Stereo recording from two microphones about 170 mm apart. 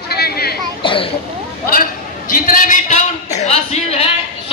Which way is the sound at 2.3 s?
55° left (ahead or behind).